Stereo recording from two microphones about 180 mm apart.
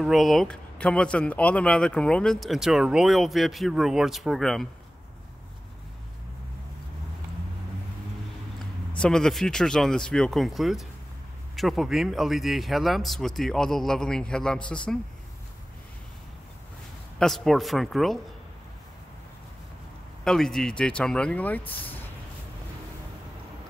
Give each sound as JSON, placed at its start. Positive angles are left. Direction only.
{"t": 0.0, "sound": "speech", "side_deg": 0}
{"t": 8.9, "sound": "speech", "side_deg": 5}
{"t": 17.2, "sound": "speech", "side_deg": 0}
{"t": 20.2, "sound": "speech", "side_deg": 0}